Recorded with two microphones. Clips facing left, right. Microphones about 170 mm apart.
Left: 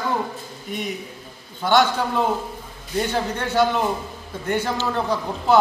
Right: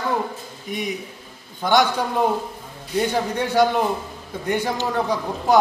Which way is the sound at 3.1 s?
15° right (ahead or behind).